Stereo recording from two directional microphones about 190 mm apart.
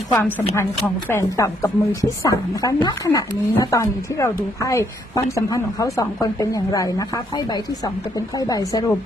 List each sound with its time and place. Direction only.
0.2 s a woman's voice: 10° left (ahead or behind)
8.4 s a woman's voice: 20° left (ahead or behind)